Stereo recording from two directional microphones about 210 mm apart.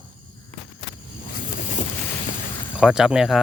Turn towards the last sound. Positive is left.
turn(degrees=0)  # may be behind; listen again after turning